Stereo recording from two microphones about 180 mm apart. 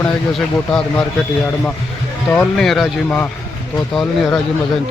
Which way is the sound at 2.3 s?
5° left (ahead or behind).